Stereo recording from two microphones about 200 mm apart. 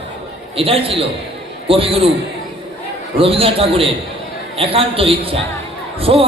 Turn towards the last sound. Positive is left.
turn(degrees=-30)  # may be behind; listen again after turning